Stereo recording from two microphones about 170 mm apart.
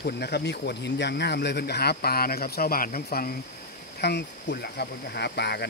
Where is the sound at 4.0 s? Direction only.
80° left.